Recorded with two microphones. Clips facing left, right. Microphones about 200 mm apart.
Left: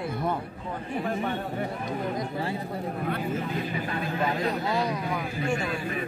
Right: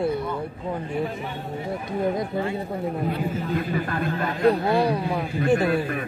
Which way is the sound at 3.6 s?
55° right (ahead or behind).